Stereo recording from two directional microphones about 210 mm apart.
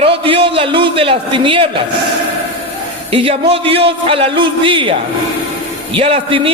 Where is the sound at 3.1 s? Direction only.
25° right (ahead or behind).